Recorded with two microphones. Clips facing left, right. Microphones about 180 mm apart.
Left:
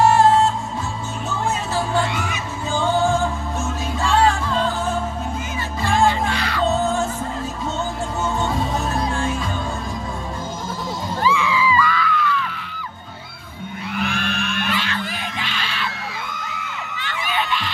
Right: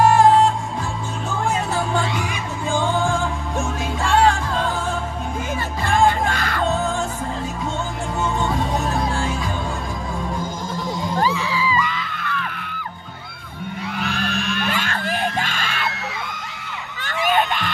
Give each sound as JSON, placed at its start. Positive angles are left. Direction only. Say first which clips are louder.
{"t": 5.9, "sound": "music", "louder": "right 1 dB", "side_deg": -50}
{"t": 6.7, "sound": "music", "louder": "left 4 dB", "side_deg": 5}
{"t": 11.1, "sound": "a sound", "louder": "left 3 dB", "side_deg": -40}
{"t": 11.7, "sound": "music", "louder": "left 3 dB", "side_deg": -20}
{"t": 12.2, "sound": "music", "louder": "left 5 dB", "side_deg": -50}
{"t": 14.7, "sound": "music", "louder": "right 1 dB", "side_deg": -45}
{"t": 17.0, "sound": "a sound", "louder": "right 6 dB", "side_deg": -45}